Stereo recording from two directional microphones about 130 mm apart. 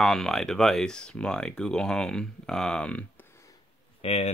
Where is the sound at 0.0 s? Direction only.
5° left (ahead or behind).